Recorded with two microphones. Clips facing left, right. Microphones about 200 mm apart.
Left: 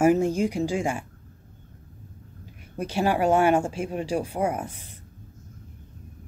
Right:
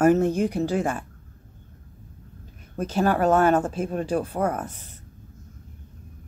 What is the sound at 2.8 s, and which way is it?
Speech, 10° left (ahead or behind).